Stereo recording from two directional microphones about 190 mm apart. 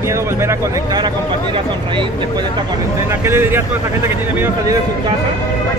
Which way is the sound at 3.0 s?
15° right (ahead or behind).